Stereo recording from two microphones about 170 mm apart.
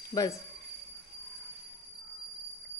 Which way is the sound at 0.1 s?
20° left (ahead or behind).